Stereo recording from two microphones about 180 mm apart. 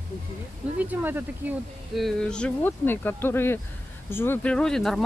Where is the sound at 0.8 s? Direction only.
10° right (ahead or behind).